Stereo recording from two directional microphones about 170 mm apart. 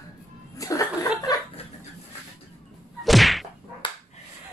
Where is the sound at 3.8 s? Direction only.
30° left (ahead or behind).